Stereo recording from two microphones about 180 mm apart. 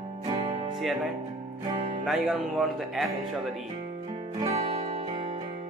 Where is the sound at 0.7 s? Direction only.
Centre (ahead or behind).